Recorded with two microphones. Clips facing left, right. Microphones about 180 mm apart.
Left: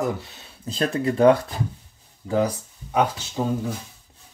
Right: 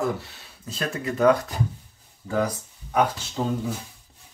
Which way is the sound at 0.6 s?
30° left (ahead or behind).